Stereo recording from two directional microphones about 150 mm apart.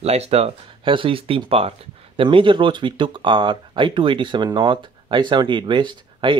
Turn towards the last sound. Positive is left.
turn(degrees=-30)  # may be behind; listen again after turning